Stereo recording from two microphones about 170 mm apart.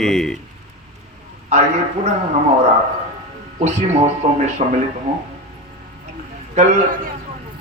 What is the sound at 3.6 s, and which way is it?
Speech, 40° right (ahead or behind).